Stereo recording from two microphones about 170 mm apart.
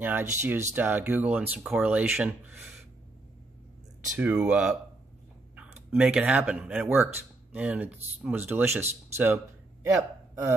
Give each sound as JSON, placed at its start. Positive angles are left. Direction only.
{"t": 0.0, "sound": "speech", "side_deg": -10}
{"t": 4.2, "sound": "speech", "side_deg": -10}